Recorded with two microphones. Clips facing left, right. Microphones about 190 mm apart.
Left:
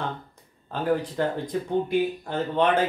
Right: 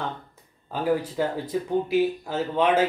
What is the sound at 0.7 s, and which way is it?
Speech, 10° right (ahead or behind).